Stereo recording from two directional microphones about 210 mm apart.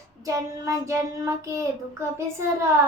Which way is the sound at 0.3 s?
15° right (ahead or behind).